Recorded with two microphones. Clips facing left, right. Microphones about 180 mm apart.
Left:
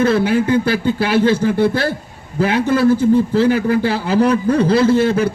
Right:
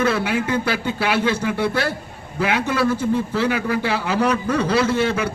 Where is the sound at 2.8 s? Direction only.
30° left (ahead or behind).